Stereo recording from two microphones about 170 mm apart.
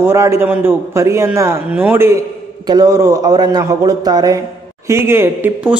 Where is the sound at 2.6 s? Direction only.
25° right (ahead or behind).